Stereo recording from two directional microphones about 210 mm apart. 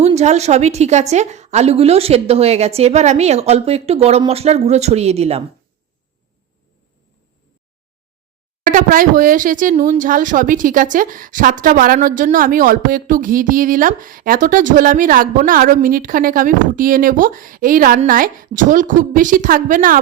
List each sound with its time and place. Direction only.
0.0 s speech: 30° right (ahead or behind)
8.6 s speech: 40° right (ahead or behind)